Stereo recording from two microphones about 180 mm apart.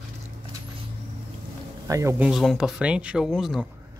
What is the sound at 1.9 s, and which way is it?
Speech, 15° right (ahead or behind).